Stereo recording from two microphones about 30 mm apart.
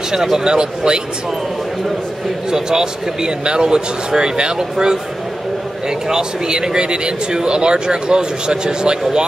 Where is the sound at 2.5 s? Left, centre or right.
Right.